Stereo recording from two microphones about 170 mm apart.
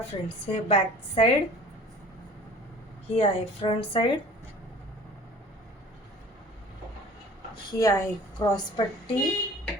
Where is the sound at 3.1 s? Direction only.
35° left (ahead or behind).